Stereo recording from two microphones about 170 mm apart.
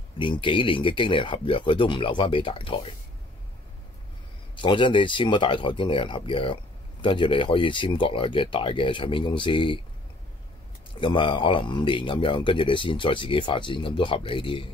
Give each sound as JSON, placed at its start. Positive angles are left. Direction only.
{"t": 0.2, "sound": "speech", "side_deg": 30}
{"t": 4.6, "sound": "speech", "side_deg": 30}
{"t": 11.0, "sound": "speech", "side_deg": 30}